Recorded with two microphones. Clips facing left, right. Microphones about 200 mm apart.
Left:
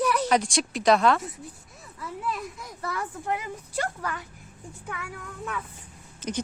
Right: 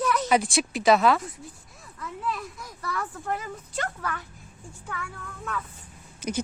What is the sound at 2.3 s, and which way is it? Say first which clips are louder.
Speech: right 1 dB; 20° left (ahead or behind).